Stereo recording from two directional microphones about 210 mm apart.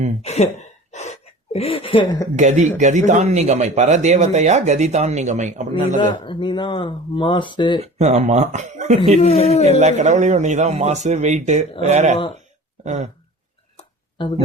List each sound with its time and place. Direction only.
0.2 s speech: 30° left (ahead or behind)
0.9 s a sound: 35° left (ahead or behind)
1.5 s speech: 25° left (ahead or behind)
2.3 s speech: 35° right (ahead or behind)
6.0 s speech: 25° left (ahead or behind)
7.9 s speech: 30° right (ahead or behind)
9.2 s speech: 30° left (ahead or behind)
9.6 s speech: 35° right (ahead or behind)
12.8 s a sound: 35° right (ahead or behind)
13.7 s a sound: 25° left (ahead or behind)